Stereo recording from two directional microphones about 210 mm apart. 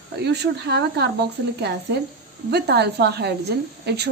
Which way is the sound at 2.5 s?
50° right (ahead or behind).